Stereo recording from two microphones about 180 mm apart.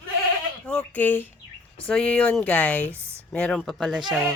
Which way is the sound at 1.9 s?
5° left (ahead or behind).